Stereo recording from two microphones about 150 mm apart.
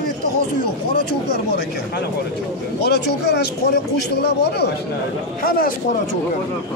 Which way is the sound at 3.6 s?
90° left.